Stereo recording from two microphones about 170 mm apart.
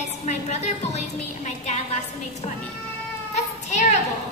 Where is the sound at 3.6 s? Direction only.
40° left (ahead or behind).